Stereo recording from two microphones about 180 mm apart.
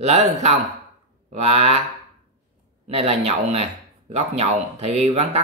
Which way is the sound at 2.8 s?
35° right (ahead or behind).